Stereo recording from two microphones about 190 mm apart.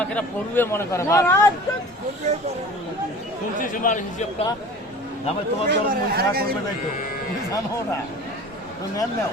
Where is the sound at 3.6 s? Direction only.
45° left (ahead or behind).